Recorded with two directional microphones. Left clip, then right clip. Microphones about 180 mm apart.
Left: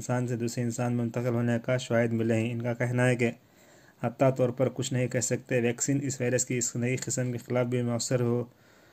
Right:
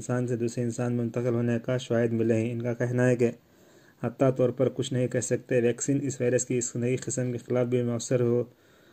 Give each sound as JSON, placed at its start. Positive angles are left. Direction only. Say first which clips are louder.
{"t": 0.0, "sound": "speech", "louder": "right 2 dB", "side_deg": 15}